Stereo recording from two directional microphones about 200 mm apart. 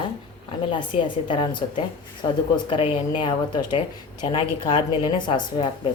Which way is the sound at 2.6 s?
25° left (ahead or behind).